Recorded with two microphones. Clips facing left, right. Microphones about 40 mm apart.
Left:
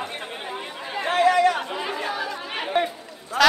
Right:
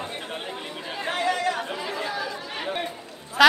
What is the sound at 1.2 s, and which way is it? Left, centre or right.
Chatter, left.